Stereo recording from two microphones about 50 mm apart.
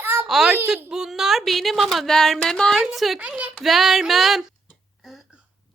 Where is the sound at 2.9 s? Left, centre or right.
Centre.